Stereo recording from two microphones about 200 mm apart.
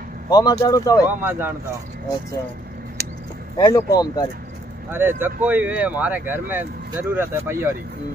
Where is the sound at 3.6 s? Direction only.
20° left (ahead or behind).